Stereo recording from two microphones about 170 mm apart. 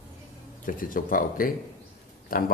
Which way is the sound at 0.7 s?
55° left (ahead or behind).